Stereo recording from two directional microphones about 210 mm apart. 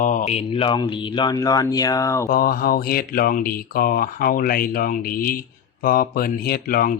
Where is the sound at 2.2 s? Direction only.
45° left (ahead or behind).